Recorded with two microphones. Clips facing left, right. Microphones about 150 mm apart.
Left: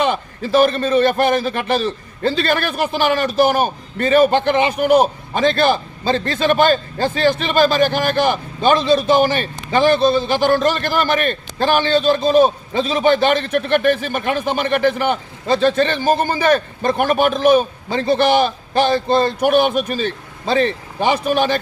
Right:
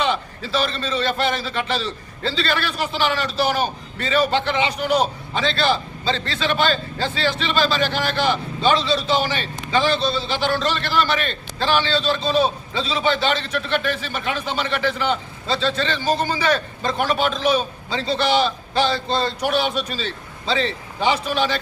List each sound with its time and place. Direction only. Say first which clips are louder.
0.0 s a man's voice: left 4 dB; 50° left (ahead or behind)